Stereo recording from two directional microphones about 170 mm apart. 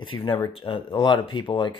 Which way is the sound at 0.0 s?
30° left (ahead or behind).